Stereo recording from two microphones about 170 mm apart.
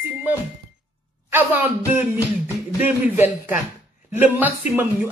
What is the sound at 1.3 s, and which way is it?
Speech, 10° right (ahead or behind).